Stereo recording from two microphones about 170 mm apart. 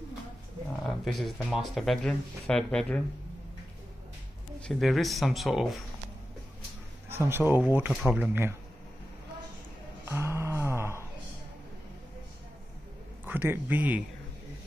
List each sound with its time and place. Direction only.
0.8 s speech: centre (ahead or behind)
4.6 s speech: centre (ahead or behind)
7.1 s speech: 15° right (ahead or behind)
7.9 s speech: centre (ahead or behind)
8.3 s speech: 10° right (ahead or behind)
10.0 s a sound: 15° right (ahead or behind)
13.2 s speech: 10° right (ahead or behind)